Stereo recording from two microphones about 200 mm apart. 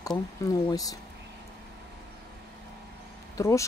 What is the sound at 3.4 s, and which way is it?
Speech, 15° left (ahead or behind).